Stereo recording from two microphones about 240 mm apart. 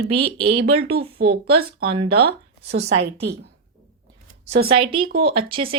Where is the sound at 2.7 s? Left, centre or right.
Right.